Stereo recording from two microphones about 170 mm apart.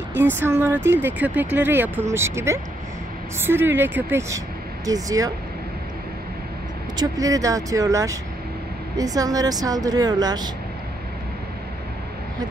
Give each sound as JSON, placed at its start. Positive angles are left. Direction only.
{"t": 0.1, "sound": "speech", "side_deg": -10}
{"t": 7.0, "sound": "speech", "side_deg": -20}